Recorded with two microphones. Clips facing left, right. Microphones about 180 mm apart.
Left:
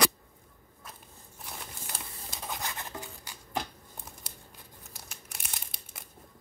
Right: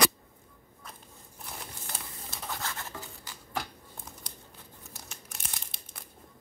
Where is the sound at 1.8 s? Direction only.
10° left (ahead or behind).